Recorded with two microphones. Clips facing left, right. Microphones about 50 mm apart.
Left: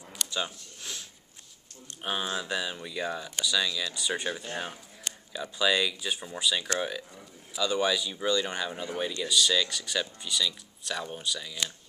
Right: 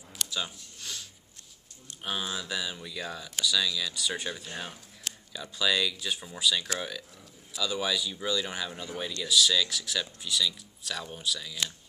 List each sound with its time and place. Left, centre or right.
0.3 s a sound: centre
2.0 s speech: centre
2.4 s speech: centre